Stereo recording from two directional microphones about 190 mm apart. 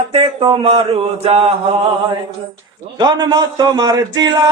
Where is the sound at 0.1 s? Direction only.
30° right (ahead or behind).